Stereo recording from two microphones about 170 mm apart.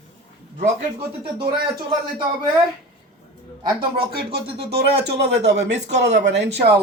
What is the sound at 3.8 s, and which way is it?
Speech, 65° right (ahead or behind).